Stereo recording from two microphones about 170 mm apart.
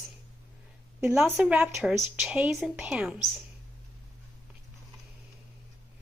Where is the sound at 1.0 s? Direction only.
5° right (ahead or behind).